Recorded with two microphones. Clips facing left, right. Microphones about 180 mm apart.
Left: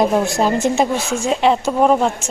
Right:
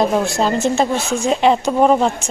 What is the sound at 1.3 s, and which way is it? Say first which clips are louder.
A woman's voice: right 1 dB; centre (ahead or behind).